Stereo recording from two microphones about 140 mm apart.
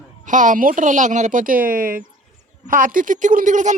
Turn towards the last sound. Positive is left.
turn(degrees=-65)  # may be behind; listen again after turning